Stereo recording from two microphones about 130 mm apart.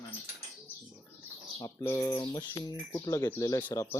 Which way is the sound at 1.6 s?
25° left (ahead or behind).